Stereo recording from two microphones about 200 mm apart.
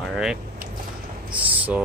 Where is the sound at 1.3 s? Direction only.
5° right (ahead or behind).